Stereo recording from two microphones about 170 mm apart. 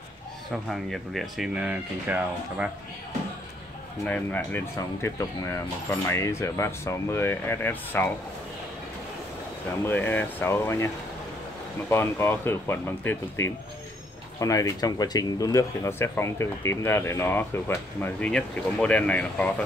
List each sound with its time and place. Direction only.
0.5 s speech: centre (ahead or behind)
4.0 s speech: 10° left (ahead or behind)
9.8 s speech: 10° left (ahead or behind)
11.9 s speech: 15° left (ahead or behind)